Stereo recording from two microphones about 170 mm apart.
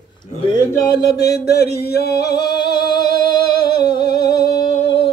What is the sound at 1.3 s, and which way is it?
Music, 70° left (ahead or behind).